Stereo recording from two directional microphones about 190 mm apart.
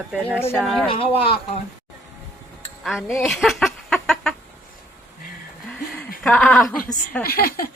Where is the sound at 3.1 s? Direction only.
Centre (ahead or behind).